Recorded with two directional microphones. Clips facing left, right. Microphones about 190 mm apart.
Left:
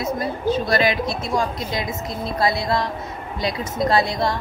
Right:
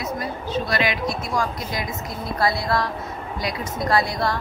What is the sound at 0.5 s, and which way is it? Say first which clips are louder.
Speech: left 5 dB; 40° left (ahead or behind).